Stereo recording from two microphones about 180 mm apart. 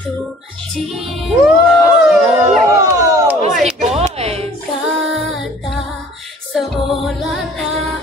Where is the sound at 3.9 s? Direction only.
35° right (ahead or behind).